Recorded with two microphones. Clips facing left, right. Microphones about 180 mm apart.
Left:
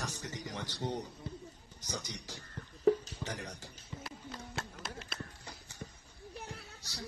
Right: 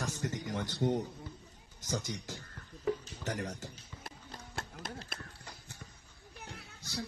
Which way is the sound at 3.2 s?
45° right (ahead or behind).